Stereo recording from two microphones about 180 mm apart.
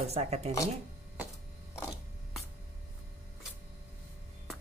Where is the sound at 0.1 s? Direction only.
35° right (ahead or behind).